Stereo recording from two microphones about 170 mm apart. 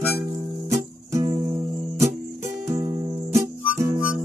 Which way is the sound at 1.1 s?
25° right (ahead or behind).